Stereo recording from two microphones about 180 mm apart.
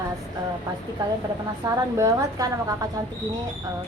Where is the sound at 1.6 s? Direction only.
15° right (ahead or behind).